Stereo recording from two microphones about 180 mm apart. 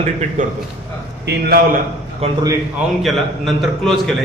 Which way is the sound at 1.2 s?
60° right (ahead or behind).